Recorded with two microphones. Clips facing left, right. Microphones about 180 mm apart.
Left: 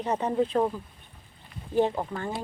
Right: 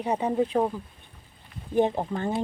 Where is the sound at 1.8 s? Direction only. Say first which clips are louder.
Right 1 dB; 20° right (ahead or behind).